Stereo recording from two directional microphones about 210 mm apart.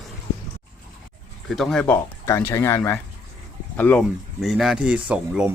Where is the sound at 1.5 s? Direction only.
Centre (ahead or behind).